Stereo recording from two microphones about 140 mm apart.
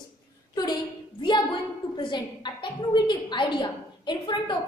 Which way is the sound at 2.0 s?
30° left (ahead or behind).